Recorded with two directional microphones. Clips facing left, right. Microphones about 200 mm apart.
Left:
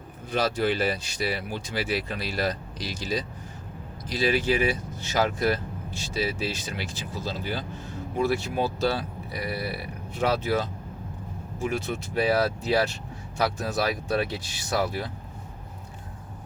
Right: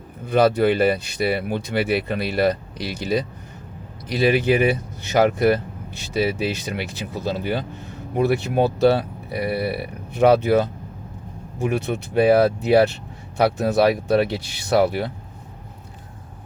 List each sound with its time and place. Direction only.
0.3 s speech: 55° right (ahead or behind)